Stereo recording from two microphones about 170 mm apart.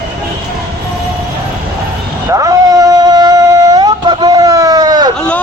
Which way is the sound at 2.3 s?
20° right (ahead or behind).